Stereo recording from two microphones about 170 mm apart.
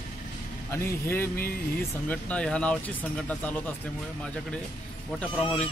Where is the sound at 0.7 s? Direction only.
15° left (ahead or behind).